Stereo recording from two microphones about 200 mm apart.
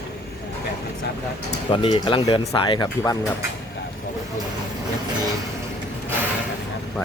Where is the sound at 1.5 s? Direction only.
25° left (ahead or behind).